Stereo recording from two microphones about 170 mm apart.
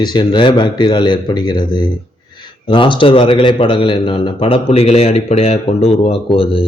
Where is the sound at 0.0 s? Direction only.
25° left (ahead or behind).